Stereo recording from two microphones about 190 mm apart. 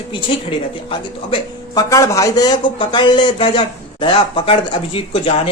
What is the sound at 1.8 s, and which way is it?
Speech, 15° left (ahead or behind).